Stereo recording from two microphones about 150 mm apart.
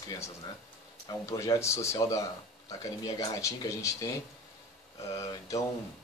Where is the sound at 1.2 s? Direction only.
20° left (ahead or behind).